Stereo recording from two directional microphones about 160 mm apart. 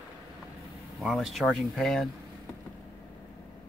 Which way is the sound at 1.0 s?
Centre (ahead or behind).